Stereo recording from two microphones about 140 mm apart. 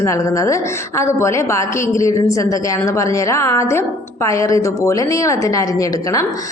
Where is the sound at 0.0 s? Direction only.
20° left (ahead or behind).